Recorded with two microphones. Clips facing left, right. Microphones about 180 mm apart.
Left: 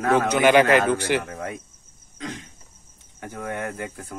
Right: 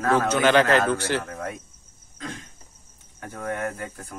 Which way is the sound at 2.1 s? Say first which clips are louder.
Left 2 dB; 20° left (ahead or behind).